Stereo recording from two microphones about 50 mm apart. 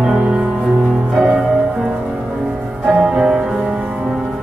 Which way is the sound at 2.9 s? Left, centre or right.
Centre.